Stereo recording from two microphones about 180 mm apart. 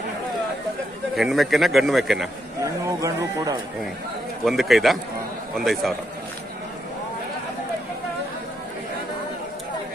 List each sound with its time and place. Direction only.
1.1 s a man's voice: centre (ahead or behind)
2.6 s speech: 15° right (ahead or behind)
4.5 s a man's voice: centre (ahead or behind)